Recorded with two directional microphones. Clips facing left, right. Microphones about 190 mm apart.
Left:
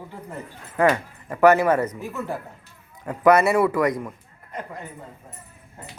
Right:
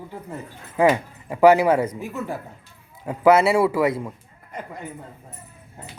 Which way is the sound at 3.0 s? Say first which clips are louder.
Right 1 dB; 5° right (ahead or behind).